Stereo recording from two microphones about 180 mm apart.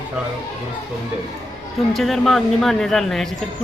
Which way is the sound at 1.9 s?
Centre (ahead or behind).